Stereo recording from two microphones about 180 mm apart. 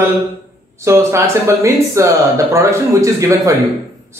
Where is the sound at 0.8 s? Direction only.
15° right (ahead or behind).